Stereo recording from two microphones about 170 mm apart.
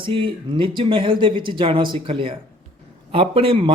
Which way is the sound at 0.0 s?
30° right (ahead or behind).